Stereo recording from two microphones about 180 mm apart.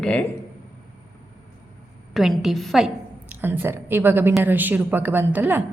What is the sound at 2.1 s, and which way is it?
A woman's voice, centre (ahead or behind).